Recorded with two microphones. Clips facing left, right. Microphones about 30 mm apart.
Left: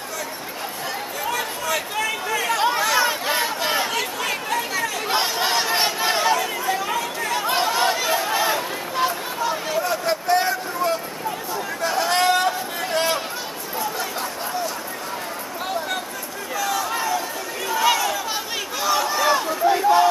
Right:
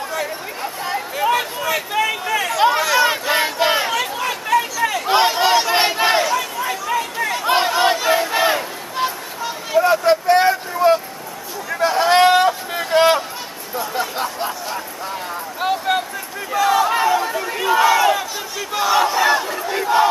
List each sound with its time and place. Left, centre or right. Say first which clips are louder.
0.8 s chatter: right 8 dB; right
1.7 s a sound: right 5 dB; centre
2.6 s chatter: right 6 dB; centre
3.1 s crowd: right 4 dB; right
5.1 s a sound: right 7 dB; right
6.6 s chatter: right 2 dB; centre
7.4 s crowd: right 5 dB; right
9.8 s a sound: right 12 dB; right
16.5 s crowd: right 8 dB; right; by 20.1 s centre